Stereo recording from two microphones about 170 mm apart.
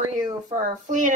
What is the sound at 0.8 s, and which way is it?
Speech, 50° right (ahead or behind).